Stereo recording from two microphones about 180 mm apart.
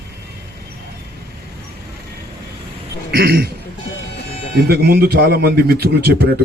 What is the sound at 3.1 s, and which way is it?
Speech, 60° right (ahead or behind).